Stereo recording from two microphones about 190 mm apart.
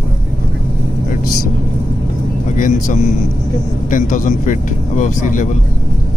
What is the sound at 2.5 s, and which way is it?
Speech, 40° left (ahead or behind).